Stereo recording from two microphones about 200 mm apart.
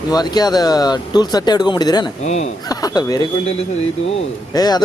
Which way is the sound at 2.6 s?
20° left (ahead or behind).